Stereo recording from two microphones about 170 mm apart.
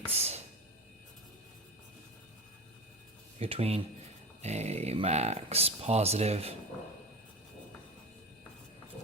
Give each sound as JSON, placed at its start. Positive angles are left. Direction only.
{"t": 0.1, "sound": "speech", "side_deg": -40}
{"t": 3.3, "sound": "speech", "side_deg": -35}